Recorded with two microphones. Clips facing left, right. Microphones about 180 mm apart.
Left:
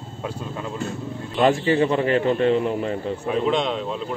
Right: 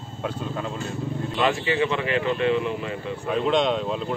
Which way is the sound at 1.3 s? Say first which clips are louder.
Left 5 dB; 40° left (ahead or behind).